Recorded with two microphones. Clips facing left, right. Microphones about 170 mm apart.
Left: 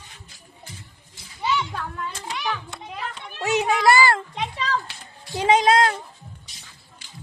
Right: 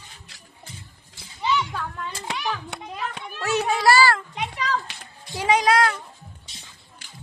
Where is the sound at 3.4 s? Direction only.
15° left (ahead or behind).